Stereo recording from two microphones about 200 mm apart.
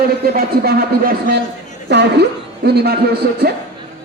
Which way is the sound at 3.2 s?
50° right (ahead or behind).